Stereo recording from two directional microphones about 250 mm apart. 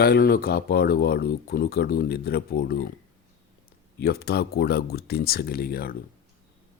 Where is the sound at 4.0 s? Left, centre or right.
Left.